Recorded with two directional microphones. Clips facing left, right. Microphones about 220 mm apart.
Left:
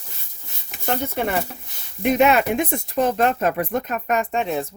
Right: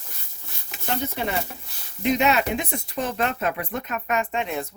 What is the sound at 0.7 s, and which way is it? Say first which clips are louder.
Speech: left 3 dB; 55° left (ahead or behind).